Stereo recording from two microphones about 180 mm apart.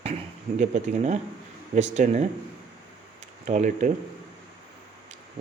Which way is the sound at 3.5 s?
40° right (ahead or behind).